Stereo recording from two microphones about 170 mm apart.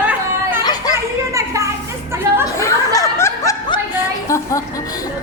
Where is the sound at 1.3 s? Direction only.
20° right (ahead or behind).